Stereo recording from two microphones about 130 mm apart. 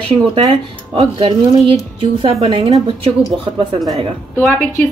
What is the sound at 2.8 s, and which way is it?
Speech, 45° right (ahead or behind).